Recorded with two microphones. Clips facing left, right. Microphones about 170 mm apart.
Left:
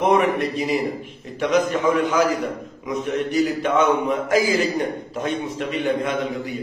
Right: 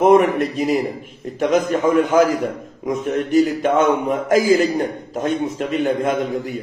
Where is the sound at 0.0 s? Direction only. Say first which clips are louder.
Right 5 dB; 45° right (ahead or behind).